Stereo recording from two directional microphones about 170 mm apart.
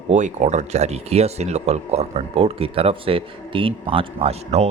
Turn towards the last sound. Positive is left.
turn(degrees=-40)  # may be behind; listen again after turning